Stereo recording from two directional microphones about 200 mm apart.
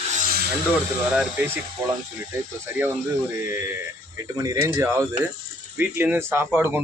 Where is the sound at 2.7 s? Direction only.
10° right (ahead or behind).